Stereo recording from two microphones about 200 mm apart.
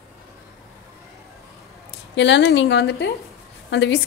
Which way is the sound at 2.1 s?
60° left (ahead or behind).